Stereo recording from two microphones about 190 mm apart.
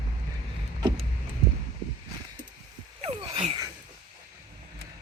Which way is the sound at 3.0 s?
30° right (ahead or behind).